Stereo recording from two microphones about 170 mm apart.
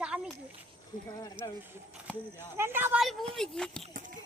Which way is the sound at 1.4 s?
30° right (ahead or behind).